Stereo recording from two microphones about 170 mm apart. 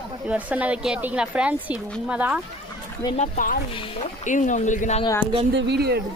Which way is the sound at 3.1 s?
45° left (ahead or behind).